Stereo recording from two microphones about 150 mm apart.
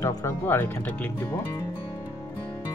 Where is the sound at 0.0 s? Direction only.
20° left (ahead or behind).